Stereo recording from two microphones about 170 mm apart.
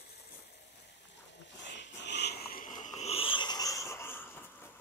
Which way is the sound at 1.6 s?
90° left.